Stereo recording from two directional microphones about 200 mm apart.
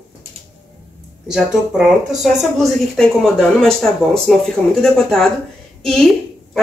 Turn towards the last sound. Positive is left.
turn(degrees=0)  # may be behind; listen again after turning